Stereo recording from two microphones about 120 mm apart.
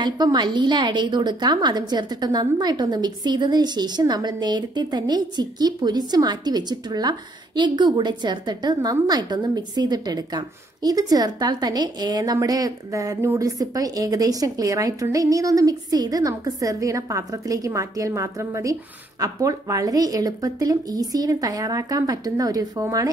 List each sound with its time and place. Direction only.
0.0 s a woman's voice: 35° right (ahead or behind)